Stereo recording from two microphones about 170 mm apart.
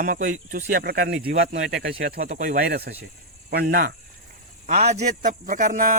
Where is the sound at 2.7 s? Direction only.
70° right (ahead or behind).